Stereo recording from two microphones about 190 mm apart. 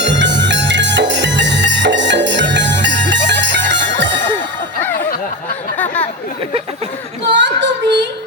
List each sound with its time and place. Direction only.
0.0 s music: 70° right (ahead or behind)
5.8 s chatter: 10° left (ahead or behind)
7.3 s child singing: 70° right (ahead or behind)